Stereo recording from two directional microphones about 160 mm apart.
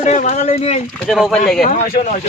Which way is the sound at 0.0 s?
50° left (ahead or behind).